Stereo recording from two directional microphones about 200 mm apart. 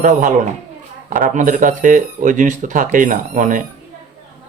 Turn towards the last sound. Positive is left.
turn(degrees=-40)  # may be behind; listen again after turning